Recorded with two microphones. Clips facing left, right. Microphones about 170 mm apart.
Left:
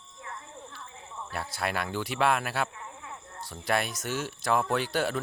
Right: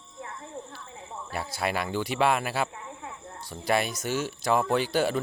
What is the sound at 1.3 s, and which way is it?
Speech, centre (ahead or behind).